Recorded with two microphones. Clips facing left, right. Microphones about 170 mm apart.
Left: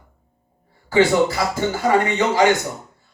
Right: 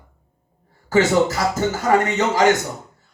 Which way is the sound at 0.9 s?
45° right (ahead or behind).